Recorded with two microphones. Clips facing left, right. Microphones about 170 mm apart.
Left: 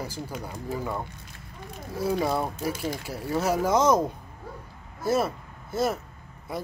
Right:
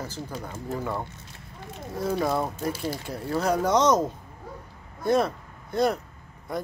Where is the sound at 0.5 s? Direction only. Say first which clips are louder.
Right 1 dB; centre (ahead or behind).